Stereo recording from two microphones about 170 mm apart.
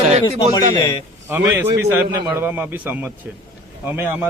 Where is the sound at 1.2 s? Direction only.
10° right (ahead or behind).